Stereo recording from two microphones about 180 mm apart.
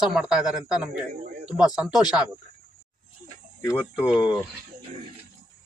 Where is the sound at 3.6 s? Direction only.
5° left (ahead or behind).